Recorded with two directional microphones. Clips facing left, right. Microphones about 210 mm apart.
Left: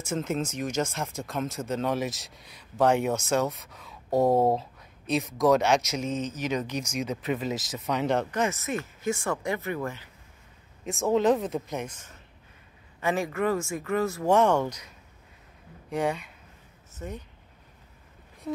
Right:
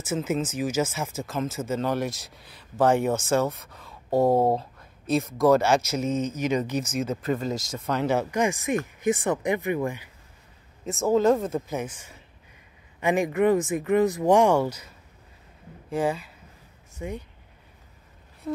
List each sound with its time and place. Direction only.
0.0 s speech: 5° right (ahead or behind)
10.9 s speech: centre (ahead or behind)
15.9 s speech: centre (ahead or behind)